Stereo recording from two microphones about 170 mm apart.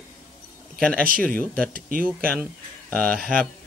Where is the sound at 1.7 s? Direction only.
60° right (ahead or behind).